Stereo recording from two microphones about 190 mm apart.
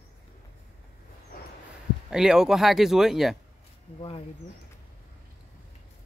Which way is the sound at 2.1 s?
5° right (ahead or behind).